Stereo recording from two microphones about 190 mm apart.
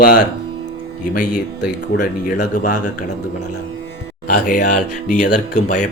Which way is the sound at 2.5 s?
45° left (ahead or behind).